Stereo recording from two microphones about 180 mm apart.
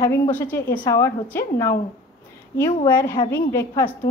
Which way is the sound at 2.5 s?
15° left (ahead or behind).